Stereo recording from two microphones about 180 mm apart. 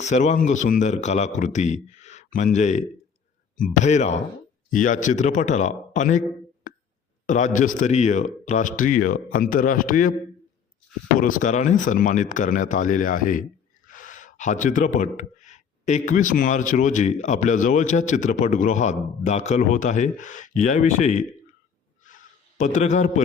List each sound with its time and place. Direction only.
0.0 s a man's voice: 40° left (ahead or behind)
7.3 s speech: 45° left (ahead or behind)
11.2 s speech: 50° left (ahead or behind)
22.0 s a sound: 45° left (ahead or behind)